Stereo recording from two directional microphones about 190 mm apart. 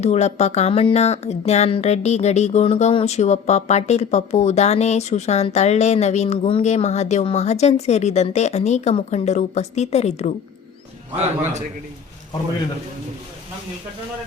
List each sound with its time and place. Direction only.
0.0 s speech: 35° left (ahead or behind)